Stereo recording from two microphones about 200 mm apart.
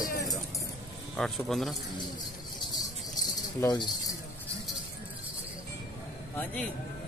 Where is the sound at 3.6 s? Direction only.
15° left (ahead or behind).